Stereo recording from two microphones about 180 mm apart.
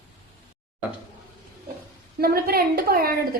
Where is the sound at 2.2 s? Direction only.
60° right (ahead or behind).